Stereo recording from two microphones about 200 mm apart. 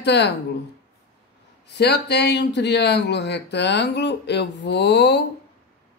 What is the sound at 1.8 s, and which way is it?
Speech, 55° left (ahead or behind).